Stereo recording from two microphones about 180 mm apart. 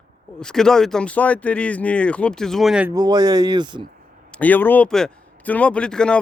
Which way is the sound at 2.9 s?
20° right (ahead or behind).